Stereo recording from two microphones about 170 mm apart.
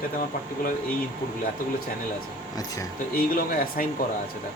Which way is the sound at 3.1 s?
60° left (ahead or behind).